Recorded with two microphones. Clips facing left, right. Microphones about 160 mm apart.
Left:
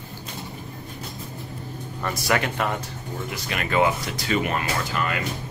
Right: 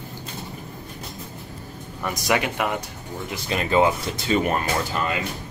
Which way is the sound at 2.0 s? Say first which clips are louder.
Right 1 dB; 15° right (ahead or behind).